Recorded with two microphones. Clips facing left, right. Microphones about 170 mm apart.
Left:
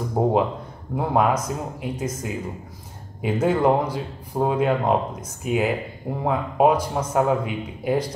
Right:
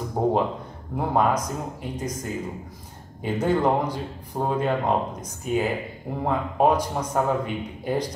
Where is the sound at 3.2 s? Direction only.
5° left (ahead or behind).